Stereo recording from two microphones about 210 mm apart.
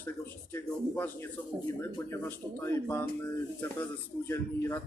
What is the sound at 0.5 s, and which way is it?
Speech, 10° left (ahead or behind).